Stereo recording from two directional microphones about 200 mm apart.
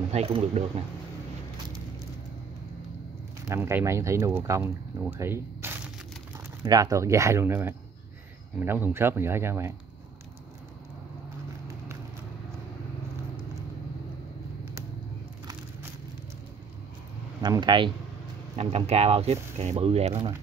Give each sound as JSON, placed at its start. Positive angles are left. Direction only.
{"t": 0.1, "sound": "speech", "side_deg": -30}
{"t": 3.4, "sound": "speech", "side_deg": -15}
{"t": 17.4, "sound": "speech", "side_deg": -20}